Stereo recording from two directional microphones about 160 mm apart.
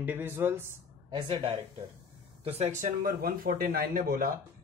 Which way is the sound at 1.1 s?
30° right (ahead or behind).